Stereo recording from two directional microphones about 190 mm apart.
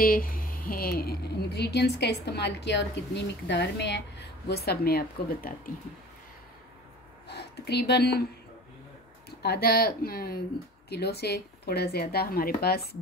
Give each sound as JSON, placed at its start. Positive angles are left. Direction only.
{"t": 0.0, "sound": "speech", "side_deg": 50}
{"t": 7.2, "sound": "speech", "side_deg": 60}
{"t": 9.4, "sound": "speech", "side_deg": 55}